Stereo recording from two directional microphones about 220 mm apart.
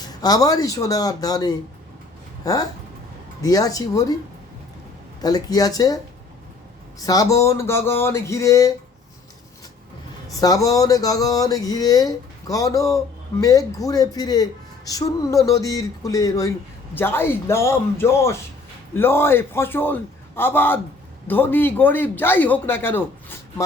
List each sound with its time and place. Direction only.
0.0 s speech: 15° left (ahead or behind)
5.2 s speech: 15° left (ahead or behind)
7.0 s speech: 15° left (ahead or behind)
10.4 s speech: 15° left (ahead or behind)